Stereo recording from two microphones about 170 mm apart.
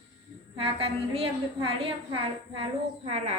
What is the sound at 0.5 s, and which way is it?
A woman's voice, 35° right (ahead or behind).